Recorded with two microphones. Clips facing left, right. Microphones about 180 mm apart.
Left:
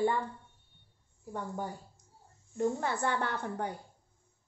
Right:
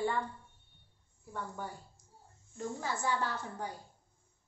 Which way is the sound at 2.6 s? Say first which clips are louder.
Left 6 dB; 60° left (ahead or behind).